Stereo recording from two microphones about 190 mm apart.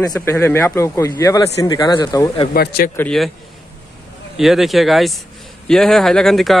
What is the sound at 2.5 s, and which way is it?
Speech, 55° left (ahead or behind).